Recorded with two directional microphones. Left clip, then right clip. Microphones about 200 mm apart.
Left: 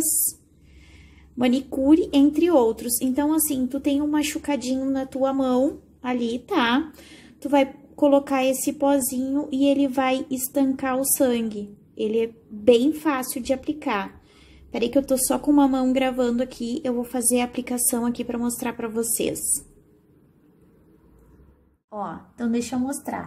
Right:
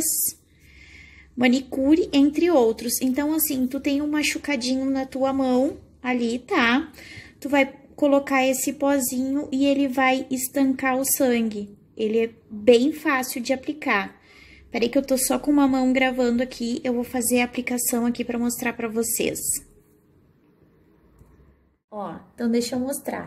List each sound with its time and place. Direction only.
0.3 s speech: centre (ahead or behind)
21.9 s a woman's voice: centre (ahead or behind)